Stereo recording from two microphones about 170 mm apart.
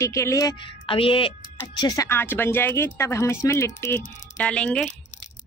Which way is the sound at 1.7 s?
20° left (ahead or behind).